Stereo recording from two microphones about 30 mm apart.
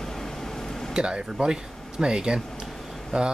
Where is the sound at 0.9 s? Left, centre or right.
Right.